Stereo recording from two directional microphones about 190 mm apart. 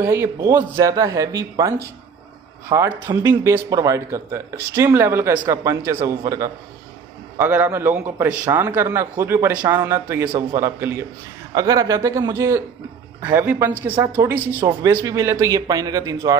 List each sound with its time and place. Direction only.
0.0 s a man's voice: 15° right (ahead or behind)